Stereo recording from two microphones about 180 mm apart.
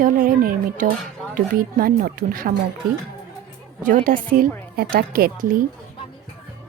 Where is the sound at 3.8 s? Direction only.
50° right (ahead or behind).